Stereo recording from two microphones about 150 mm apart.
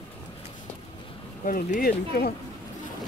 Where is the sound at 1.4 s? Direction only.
70° left (ahead or behind); by 2.3 s 85° left.